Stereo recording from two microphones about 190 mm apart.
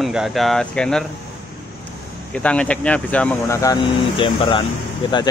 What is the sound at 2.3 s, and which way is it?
Speech, 5° left (ahead or behind).